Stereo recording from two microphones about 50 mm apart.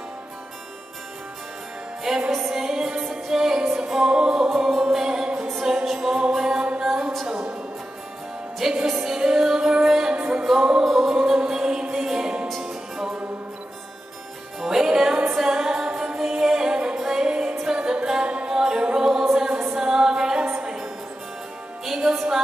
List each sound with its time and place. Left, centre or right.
2.0 s music: centre
8.8 s music: centre
11.1 s music: centre
14.6 s music: centre
21.8 s music: centre